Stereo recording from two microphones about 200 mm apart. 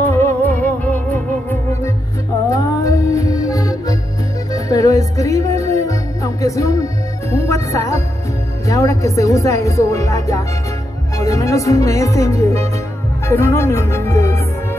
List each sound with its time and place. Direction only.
0.0 s music: 10° left (ahead or behind)
8.6 s speech: 15° left (ahead or behind)